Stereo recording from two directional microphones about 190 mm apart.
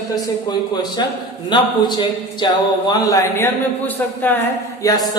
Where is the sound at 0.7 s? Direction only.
20° left (ahead or behind).